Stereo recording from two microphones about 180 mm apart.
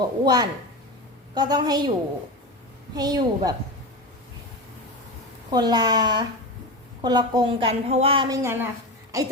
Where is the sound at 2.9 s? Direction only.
20° right (ahead or behind).